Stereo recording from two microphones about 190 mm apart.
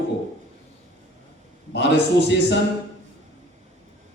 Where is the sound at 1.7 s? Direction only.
65° left (ahead or behind).